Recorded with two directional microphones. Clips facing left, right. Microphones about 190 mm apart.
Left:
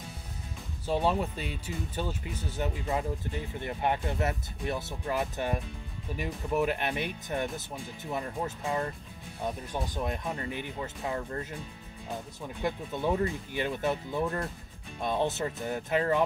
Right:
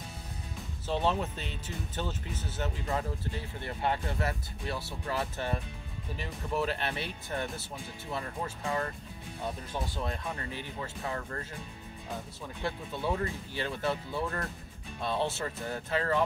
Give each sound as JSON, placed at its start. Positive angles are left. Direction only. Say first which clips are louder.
{"t": 0.8, "sound": "speech", "louder": "left 2 dB", "side_deg": 10}